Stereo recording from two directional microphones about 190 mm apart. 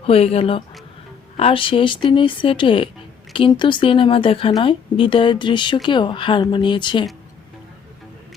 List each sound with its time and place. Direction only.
0.0 s a woman's voice: 30° left (ahead or behind)